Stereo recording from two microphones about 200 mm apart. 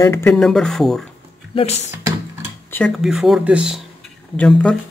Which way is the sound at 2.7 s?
5° left (ahead or behind).